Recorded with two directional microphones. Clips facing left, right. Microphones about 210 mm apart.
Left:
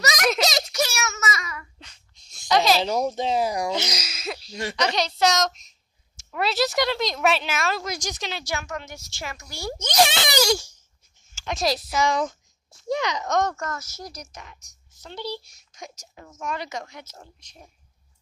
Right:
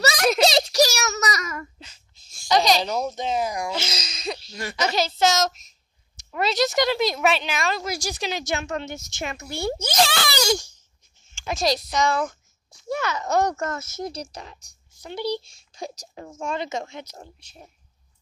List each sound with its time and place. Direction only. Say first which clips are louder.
0.0 s a sound: right 4 dB; 30° right (ahead or behind)
1.8 s a sound: right 3 dB; 5° right (ahead or behind)
2.4 s a child's voice: even; 5° left (ahead or behind)
3.2 s speech: left 2 dB; 30° left (ahead or behind)
3.7 s a woman's voice: left 2 dB; 15° left (ahead or behind)
7.9 s speech: right 3 dB; 10° right (ahead or behind); by 9.8 s 25° right (ahead or behind)
10.0 s a child's voice: left 2 dB; 20° left (ahead or behind)
10.4 s a woman's voice: even; centre (ahead or behind)
13.3 s speech: right 3 dB; 10° right (ahead or behind)
13.6 s speech: right 5 dB; 25° right (ahead or behind)
15.0 s speech: right 6 dB; 15° right (ahead or behind)
15.4 s speech: right 7 dB; 30° right (ahead or behind)
17.0 s speech: right 4 dB; 15° right (ahead or behind)